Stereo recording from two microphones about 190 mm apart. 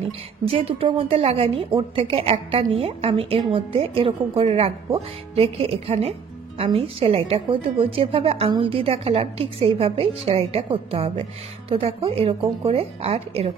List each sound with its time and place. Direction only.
0.5 s a woman's voice: 30° right (ahead or behind)